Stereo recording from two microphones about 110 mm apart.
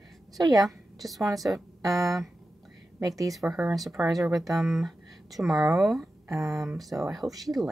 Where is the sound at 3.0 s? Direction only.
30° right (ahead or behind).